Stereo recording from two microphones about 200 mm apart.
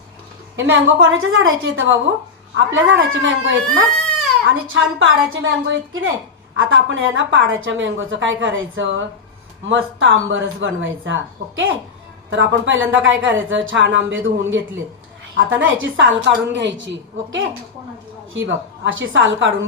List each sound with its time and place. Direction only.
0.5 s a woman's voice: 80° right
12.3 s a woman's voice: 65° right (ahead or behind)